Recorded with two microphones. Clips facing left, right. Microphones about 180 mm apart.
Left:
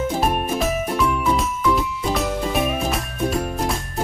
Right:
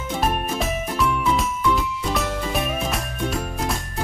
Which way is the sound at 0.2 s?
Centre (ahead or behind).